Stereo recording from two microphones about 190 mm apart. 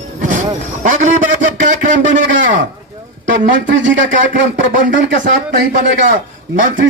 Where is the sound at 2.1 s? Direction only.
40° right (ahead or behind).